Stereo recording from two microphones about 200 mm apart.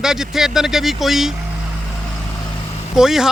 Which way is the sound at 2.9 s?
Centre (ahead or behind).